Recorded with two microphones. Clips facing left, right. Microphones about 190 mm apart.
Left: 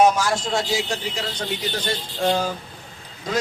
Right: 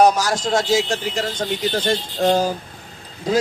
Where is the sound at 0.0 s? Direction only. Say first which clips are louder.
Right 2 dB; 40° right (ahead or behind).